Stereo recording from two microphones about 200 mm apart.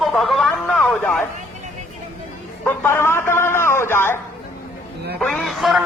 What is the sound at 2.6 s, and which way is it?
Speech, 10° left (ahead or behind).